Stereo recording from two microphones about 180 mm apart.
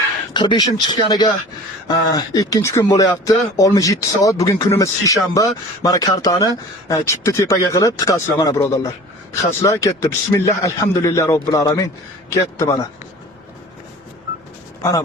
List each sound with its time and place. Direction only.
0.3 s a man's voice: 25° left (ahead or behind)